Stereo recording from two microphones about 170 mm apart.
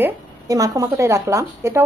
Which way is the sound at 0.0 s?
20° right (ahead or behind).